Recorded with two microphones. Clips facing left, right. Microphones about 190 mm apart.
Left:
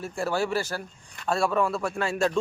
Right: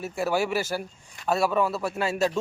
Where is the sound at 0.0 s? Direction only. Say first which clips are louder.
Right 2 dB; 5° right (ahead or behind).